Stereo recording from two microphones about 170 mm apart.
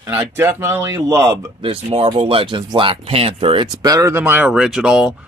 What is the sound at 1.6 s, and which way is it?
Speech, 35° right (ahead or behind).